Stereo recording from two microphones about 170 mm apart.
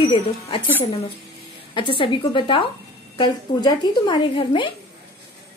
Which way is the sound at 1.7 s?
30° left (ahead or behind).